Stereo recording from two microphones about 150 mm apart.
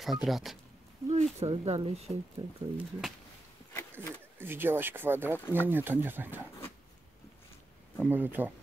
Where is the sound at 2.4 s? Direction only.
35° right (ahead or behind).